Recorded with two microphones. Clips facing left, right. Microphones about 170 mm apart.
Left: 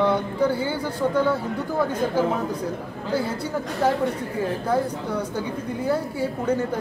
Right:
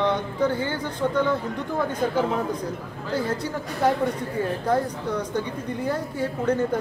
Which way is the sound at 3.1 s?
10° left (ahead or behind).